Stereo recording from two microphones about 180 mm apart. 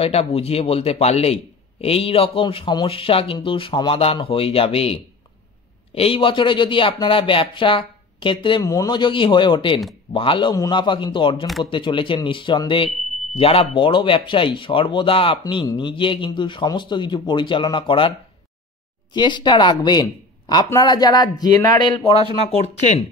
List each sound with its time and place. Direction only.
0.0 s a man's voice: 35° left (ahead or behind)
5.9 s speech: 30° left (ahead or behind)
19.1 s a man's voice: 25° left (ahead or behind)